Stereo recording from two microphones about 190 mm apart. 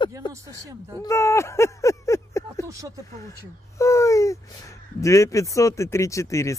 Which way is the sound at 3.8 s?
15° left (ahead or behind).